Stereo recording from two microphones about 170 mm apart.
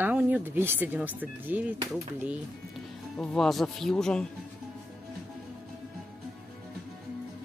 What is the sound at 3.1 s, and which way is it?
Speech, centre (ahead or behind).